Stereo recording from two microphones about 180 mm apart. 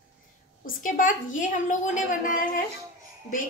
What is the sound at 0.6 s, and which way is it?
A woman's voice, 50° left (ahead or behind).